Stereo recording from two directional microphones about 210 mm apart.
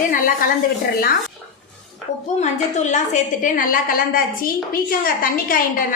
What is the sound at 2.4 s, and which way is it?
A woman's voice, 35° left (ahead or behind).